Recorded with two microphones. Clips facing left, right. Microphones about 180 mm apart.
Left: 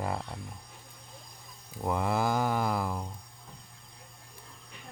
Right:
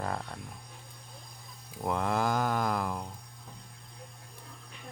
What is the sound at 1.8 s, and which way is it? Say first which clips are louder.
Mantra: left 1 dB; 5° left (ahead or behind).